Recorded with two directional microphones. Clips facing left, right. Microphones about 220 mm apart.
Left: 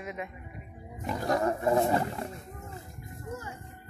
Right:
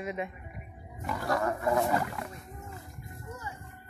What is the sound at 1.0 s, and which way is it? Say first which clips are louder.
Roaring cats: left 2 dB; 20° left (ahead or behind).